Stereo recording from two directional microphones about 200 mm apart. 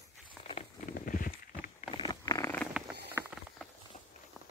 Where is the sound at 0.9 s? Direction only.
45° left (ahead or behind).